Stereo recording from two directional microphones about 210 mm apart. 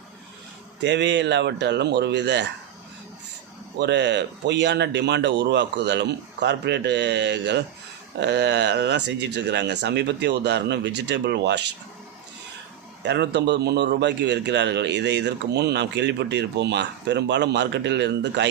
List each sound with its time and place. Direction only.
0.8 s a man's voice: 55° right (ahead or behind)
3.8 s a man's voice: 55° right (ahead or behind)
13.0 s a man's voice: 55° right (ahead or behind)